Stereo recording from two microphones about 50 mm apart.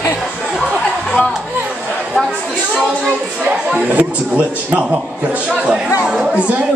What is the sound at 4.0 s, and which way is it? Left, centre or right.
A man's voice, right.